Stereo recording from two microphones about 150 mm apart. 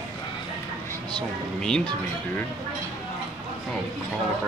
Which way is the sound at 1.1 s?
5° left (ahead or behind).